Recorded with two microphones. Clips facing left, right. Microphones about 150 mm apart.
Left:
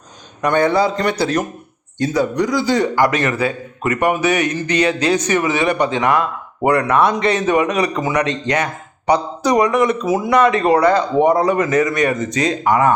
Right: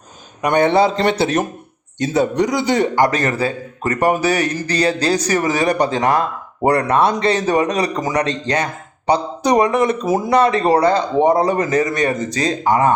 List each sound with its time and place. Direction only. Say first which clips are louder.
0.4 s a man's voice: right 1 dB; 20° right (ahead or behind)
3.1 s a man's voice: even; 35° right (ahead or behind)